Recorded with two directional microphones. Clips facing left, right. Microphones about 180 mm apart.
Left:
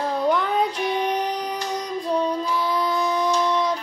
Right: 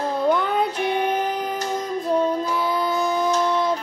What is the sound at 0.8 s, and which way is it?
Child singing, 50° right (ahead or behind).